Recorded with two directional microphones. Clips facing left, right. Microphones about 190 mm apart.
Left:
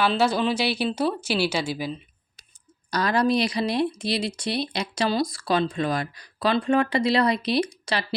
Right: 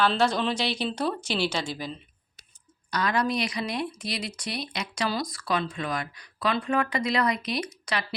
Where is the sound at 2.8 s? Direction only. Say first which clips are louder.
Left 4 dB; 35° left (ahead or behind).